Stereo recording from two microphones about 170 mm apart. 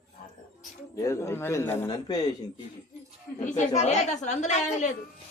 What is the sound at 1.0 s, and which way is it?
A man's voice, 15° left (ahead or behind).